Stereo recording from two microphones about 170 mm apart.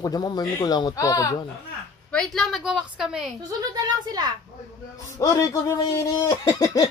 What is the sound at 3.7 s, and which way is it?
Speech, 25° right (ahead or behind).